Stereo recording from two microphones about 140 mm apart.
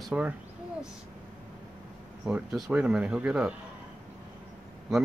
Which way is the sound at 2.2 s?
5° right (ahead or behind).